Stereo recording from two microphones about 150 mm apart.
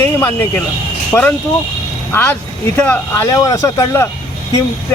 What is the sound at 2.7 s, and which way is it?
Speech, 10° left (ahead or behind).